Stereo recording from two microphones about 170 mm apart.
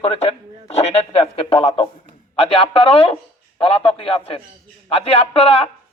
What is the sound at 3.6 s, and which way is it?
A man's voice, 35° left (ahead or behind).